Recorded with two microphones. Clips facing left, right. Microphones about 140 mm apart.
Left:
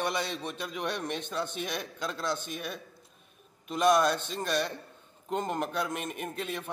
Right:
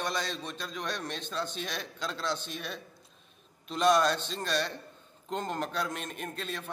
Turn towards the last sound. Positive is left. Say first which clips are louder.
# left 2 dB
turn(degrees=15)  # may be behind; listen again after turning